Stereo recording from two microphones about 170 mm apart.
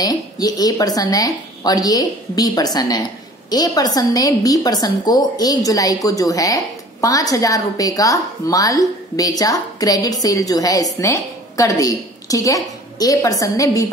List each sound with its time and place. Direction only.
0.0 s a woman's voice: 25° left (ahead or behind)